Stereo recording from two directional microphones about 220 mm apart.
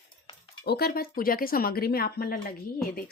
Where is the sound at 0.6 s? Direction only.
45° left (ahead or behind).